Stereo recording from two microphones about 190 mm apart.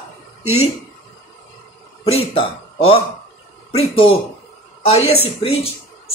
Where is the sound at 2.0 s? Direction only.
30° left (ahead or behind).